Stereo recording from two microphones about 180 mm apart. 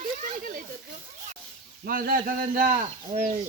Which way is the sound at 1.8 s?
55° right (ahead or behind).